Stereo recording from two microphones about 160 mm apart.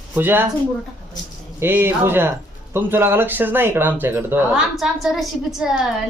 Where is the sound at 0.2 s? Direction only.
10° right (ahead or behind).